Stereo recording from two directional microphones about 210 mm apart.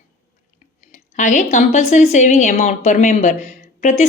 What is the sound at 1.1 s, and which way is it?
A woman's voice, 35° left (ahead or behind).